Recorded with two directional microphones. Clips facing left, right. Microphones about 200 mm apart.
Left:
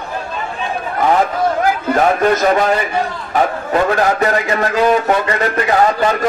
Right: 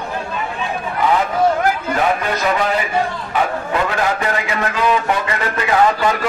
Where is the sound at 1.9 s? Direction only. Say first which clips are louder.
Left 5 dB; 45° left (ahead or behind).